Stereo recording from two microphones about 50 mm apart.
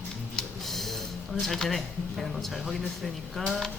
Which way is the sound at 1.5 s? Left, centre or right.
Centre.